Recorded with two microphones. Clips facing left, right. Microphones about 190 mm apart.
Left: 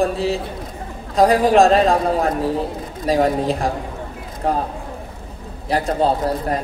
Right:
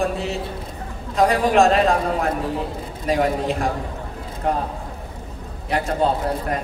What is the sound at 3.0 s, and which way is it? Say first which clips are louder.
A man's voice: left 3 dB; 35° left (ahead or behind).